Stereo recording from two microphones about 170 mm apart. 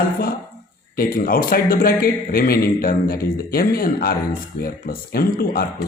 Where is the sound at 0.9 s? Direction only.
60° left (ahead or behind).